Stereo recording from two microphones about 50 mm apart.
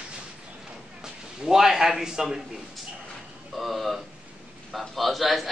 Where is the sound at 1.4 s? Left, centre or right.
Centre.